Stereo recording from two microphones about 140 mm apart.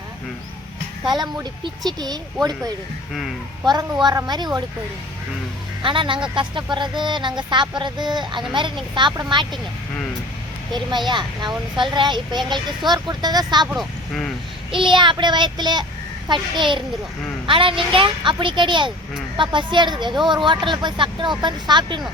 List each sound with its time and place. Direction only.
1.0 s speech: 30° right (ahead or behind)
3.2 s a woman's voice: centre (ahead or behind)
4.0 s speech: 25° right (ahead or behind)
5.8 s speech: 35° right (ahead or behind)
10.7 s speech: 35° right (ahead or behind)
14.7 s speech: 35° right (ahead or behind)